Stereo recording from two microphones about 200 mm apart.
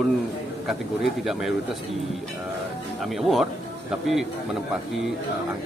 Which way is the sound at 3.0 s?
Centre (ahead or behind).